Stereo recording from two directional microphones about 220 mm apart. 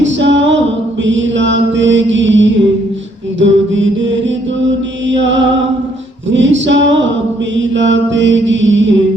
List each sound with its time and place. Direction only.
0.0 s music: 55° right (ahead or behind)
1.0 s mantra: 55° right (ahead or behind)
6.3 s a sound: 55° right (ahead or behind)
7.5 s mantra: 55° right (ahead or behind)